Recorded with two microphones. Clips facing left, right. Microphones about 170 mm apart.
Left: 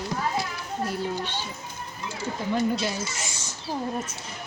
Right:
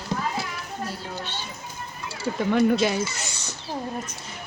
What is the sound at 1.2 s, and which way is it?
Speech, 15° left (ahead or behind).